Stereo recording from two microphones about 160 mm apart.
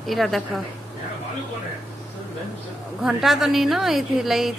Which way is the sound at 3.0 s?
Centre (ahead or behind).